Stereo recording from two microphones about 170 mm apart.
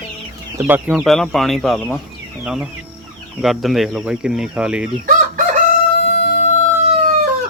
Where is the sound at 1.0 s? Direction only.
Centre (ahead or behind).